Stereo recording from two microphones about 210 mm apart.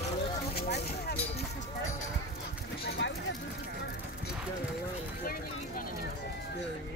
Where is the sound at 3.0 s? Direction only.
60° left (ahead or behind).